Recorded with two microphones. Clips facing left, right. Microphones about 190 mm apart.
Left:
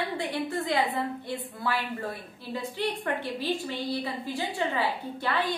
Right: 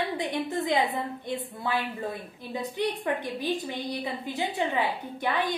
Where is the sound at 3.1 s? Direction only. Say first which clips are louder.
Right 1 dB; 15° right (ahead or behind).